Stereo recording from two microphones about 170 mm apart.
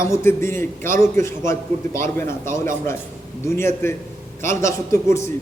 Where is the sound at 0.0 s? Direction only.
15° left (ahead or behind).